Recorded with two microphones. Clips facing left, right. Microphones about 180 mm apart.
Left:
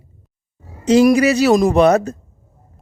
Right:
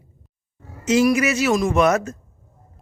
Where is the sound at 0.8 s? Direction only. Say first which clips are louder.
Left 6 dB; 35° left (ahead or behind).